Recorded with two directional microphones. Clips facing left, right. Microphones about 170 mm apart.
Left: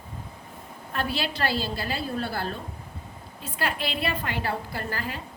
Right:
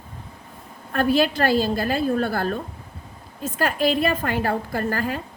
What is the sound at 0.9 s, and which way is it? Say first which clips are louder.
A woman's voice: right 10 dB; 50° right (ahead or behind).